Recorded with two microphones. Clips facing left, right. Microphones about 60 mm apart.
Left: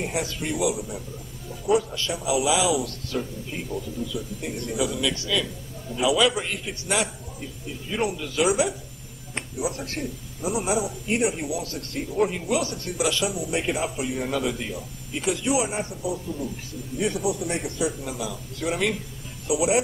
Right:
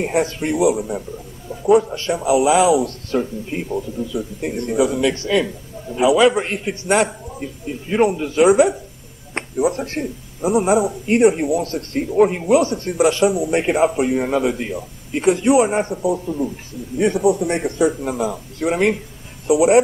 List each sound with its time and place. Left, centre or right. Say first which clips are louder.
0.0 s speech: right 9 dB; right
1.8 s speech: right 8 dB; right
2.1 s speech: right 9 dB; right
3.1 s speech: right 8 dB; right
5.1 s speech: right 8 dB; right
5.9 s speech: right 8 dB; right
6.4 s speech: right 7 dB; right
6.9 s speech: right 9 dB; right
12.6 s speech: right 9 dB; right
13.2 s speech: right 10 dB; right
19.4 s speech: right 9 dB; right